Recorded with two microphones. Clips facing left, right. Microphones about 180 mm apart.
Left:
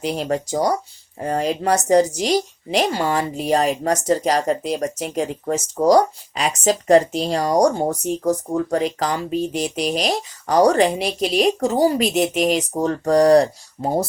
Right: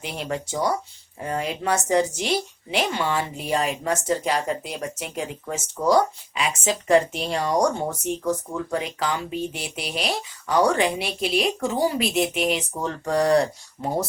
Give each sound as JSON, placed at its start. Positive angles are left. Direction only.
{"t": 0.0, "sound": "a woman's voice", "side_deg": 40}